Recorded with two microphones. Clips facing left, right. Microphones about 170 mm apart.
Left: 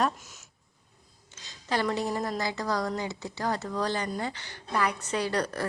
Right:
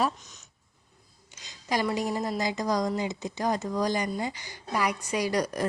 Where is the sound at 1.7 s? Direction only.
10° right (ahead or behind).